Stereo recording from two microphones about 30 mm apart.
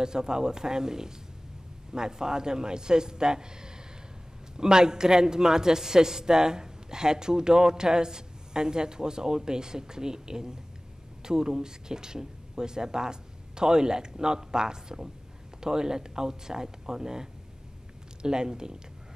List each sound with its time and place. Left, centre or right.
0.0 s a man's voice: right